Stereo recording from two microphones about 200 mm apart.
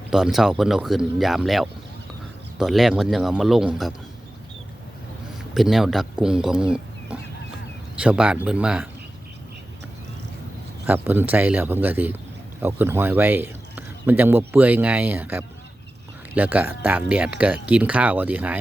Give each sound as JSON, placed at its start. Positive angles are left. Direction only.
{"t": 0.1, "sound": "speech", "side_deg": 0}
{"t": 5.5, "sound": "speech", "side_deg": 0}
{"t": 10.8, "sound": "speech", "side_deg": -10}